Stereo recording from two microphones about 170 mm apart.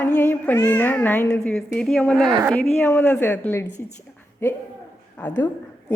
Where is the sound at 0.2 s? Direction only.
10° left (ahead or behind).